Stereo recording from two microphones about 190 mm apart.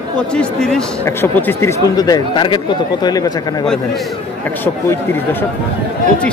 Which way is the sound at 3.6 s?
5° left (ahead or behind).